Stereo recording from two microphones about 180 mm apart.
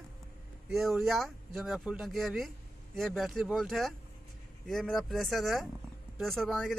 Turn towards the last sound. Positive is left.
turn(degrees=0)  # may be behind; listen again after turning